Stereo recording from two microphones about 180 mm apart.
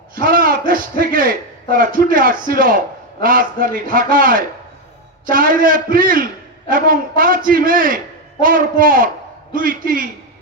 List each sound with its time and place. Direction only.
0.2 s a man's voice: 50° right (ahead or behind)